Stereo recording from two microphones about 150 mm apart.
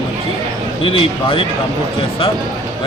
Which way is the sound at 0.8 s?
35° left (ahead or behind).